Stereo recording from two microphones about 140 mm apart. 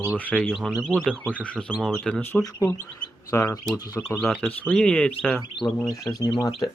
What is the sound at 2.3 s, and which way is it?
Speech, 20° left (ahead or behind).